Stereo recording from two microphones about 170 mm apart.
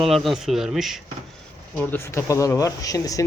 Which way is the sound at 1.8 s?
15° left (ahead or behind).